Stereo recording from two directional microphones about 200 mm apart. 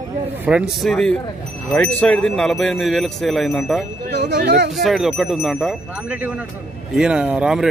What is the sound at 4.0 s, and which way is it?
Speech, 55° right (ahead or behind).